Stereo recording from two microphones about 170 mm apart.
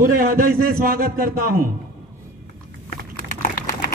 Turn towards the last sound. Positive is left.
turn(degrees=50)  # may be behind; listen again after turning